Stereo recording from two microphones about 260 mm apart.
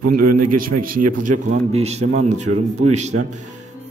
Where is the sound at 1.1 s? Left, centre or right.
Right.